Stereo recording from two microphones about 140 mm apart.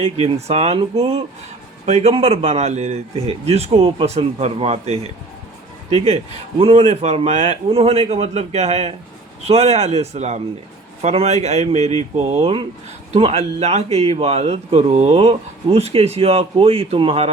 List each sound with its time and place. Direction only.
0.0 s speech: 50° right (ahead or behind)
6.6 s speech: 40° right (ahead or behind)